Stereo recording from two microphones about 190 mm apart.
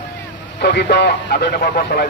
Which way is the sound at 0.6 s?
60° left (ahead or behind).